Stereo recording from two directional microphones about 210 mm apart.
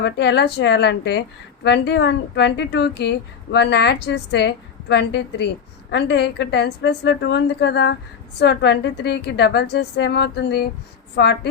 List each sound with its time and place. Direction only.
0.0 s speech: 55° left (ahead or behind)